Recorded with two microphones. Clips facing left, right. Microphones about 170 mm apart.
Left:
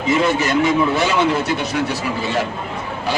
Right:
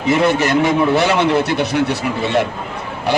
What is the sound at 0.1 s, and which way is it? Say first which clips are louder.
A man's voice: right 3 dB; 65° right (ahead or behind).